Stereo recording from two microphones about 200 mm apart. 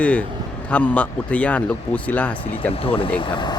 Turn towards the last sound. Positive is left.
turn(degrees=25)  # may be behind; listen again after turning